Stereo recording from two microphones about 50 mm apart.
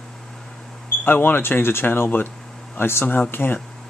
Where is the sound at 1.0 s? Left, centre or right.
Left.